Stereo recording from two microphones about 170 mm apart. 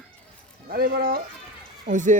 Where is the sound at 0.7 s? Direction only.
60° right (ahead or behind).